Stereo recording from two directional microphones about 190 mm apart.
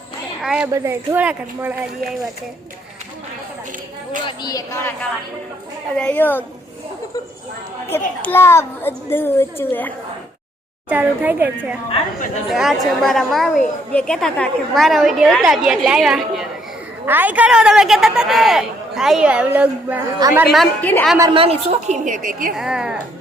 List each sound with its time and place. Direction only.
0.4 s a man's voice: 5° right (ahead or behind)
4.3 s a woman's voice: 20° left (ahead or behind)
6.0 s a child's voice: 10° left (ahead or behind)
7.9 s a child's voice: 10° left (ahead or behind)
10.8 s a woman's voice: 10° right (ahead or behind)
21.2 s a woman's voice: 25° right (ahead or behind); by 22.5 s 45° right (ahead or behind)
22.5 s a man's voice: 5° right (ahead or behind)